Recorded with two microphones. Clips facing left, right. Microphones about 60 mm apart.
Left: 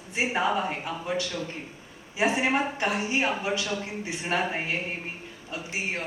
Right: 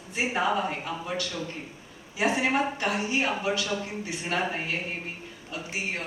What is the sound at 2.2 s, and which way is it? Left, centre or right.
A woman's voice, left.